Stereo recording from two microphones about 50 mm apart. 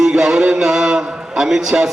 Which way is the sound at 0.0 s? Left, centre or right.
Centre.